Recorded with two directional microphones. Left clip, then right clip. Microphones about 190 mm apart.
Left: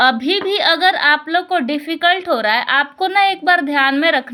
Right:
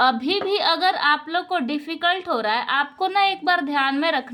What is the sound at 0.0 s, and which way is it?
A woman's voice, 15° left (ahead or behind).